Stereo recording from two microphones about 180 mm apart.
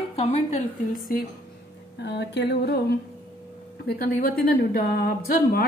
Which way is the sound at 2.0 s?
70° left (ahead or behind).